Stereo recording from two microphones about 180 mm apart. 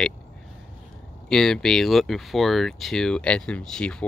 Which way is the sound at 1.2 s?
5° left (ahead or behind).